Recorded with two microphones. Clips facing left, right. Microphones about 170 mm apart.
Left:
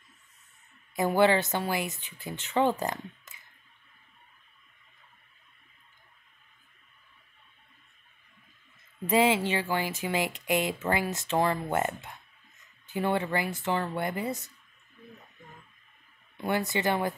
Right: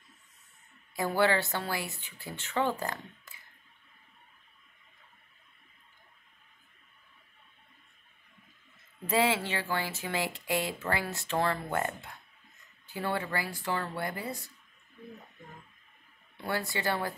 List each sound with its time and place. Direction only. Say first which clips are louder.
0.9 s speech: left 4 dB; 20° left (ahead or behind)
9.0 s speech: left 4 dB; 15° left (ahead or behind)
16.4 s speech: left 4 dB; 20° left (ahead or behind)